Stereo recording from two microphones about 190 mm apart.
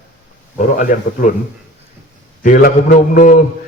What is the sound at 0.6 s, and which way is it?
Speech, 45° left (ahead or behind).